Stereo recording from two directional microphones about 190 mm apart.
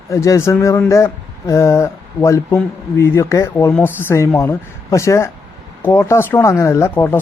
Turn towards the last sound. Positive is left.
turn(degrees=10)  # may be behind; listen again after turning